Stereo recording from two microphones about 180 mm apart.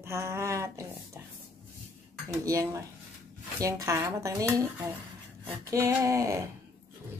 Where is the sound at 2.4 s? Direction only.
20° right (ahead or behind).